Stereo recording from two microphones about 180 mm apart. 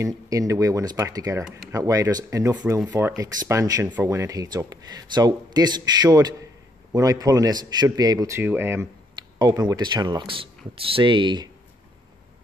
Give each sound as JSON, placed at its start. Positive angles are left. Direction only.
{"t": 0.0, "sound": "speech", "side_deg": -20}
{"t": 2.5, "sound": "speech", "side_deg": -5}